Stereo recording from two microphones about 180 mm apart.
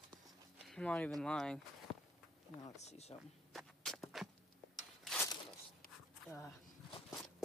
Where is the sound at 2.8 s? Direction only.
35° left (ahead or behind).